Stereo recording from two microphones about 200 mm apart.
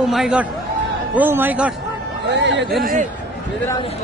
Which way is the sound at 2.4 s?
60° right (ahead or behind).